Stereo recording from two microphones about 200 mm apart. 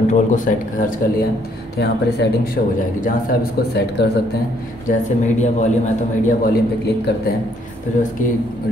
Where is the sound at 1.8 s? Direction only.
55° left (ahead or behind).